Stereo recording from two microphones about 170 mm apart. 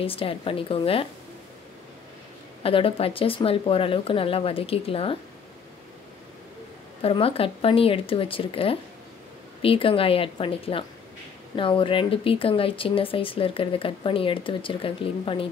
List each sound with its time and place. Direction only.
0.0 s speech: 35° left (ahead or behind)
2.6 s speech: 35° left (ahead or behind)
7.0 s speech: 35° left (ahead or behind)